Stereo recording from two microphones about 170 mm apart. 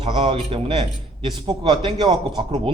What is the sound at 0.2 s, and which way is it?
A man's voice, 35° right (ahead or behind).